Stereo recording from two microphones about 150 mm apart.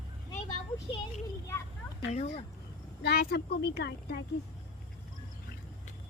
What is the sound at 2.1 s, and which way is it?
Speech, 45° left (ahead or behind).